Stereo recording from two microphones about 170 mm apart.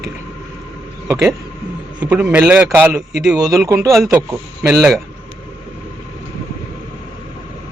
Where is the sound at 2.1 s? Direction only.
10° right (ahead or behind).